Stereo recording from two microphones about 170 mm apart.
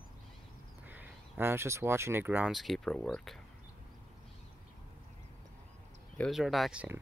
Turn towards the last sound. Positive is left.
turn(degrees=-5)  # may be behind; listen again after turning